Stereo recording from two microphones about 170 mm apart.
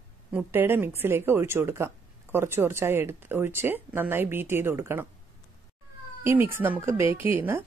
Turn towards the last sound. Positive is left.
turn(degrees=-10)  # may be behind; listen again after turning